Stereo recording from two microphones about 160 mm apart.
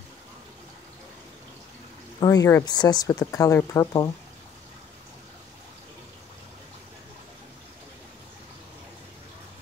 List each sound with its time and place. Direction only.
2.1 s speech: 20° left (ahead or behind)